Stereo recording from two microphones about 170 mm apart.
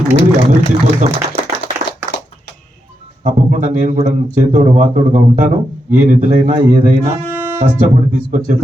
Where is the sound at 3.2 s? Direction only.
50° right (ahead or behind).